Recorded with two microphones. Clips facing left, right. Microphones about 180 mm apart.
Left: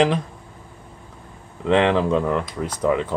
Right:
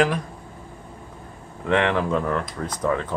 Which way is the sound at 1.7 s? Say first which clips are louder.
Left 4 dB; 20° left (ahead or behind).